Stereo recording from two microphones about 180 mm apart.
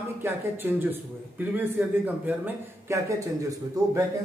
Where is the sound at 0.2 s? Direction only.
10° right (ahead or behind).